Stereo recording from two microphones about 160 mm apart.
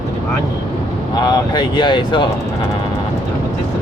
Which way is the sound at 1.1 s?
25° left (ahead or behind).